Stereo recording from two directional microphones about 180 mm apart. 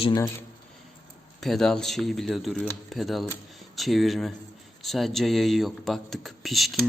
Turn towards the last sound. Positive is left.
turn(degrees=0)  # may be behind; listen again after turning